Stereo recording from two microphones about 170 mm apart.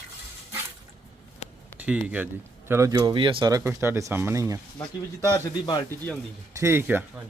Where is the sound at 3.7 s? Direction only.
15° right (ahead or behind).